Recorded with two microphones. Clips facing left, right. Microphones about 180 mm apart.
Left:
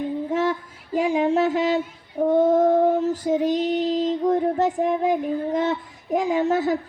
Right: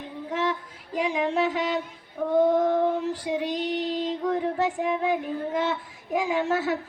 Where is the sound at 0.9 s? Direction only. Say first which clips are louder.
Left 6 dB; 45° left (ahead or behind).